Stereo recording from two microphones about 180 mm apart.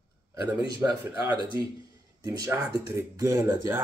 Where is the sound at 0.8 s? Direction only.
20° right (ahead or behind).